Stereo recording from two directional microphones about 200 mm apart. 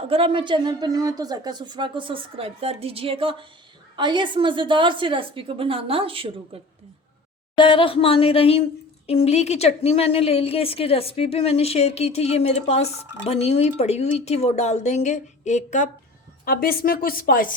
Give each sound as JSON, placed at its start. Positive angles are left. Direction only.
{"t": 0.1, "sound": "a woman's voice", "side_deg": -25}
{"t": 7.5, "sound": "speech", "side_deg": 25}
{"t": 16.5, "sound": "a woman's voice", "side_deg": 50}